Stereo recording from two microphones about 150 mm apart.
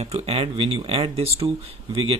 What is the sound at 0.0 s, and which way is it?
Speech, 45° right (ahead or behind).